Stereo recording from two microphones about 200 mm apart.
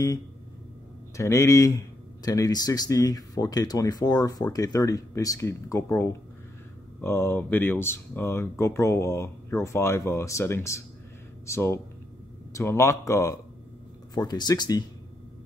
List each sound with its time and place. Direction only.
1.1 s speech: 15° left (ahead or behind)